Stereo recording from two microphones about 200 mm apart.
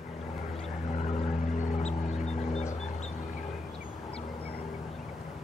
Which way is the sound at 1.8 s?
35° left (ahead or behind).